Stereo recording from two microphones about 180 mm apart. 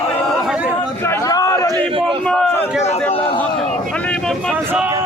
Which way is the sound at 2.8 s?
35° left (ahead or behind).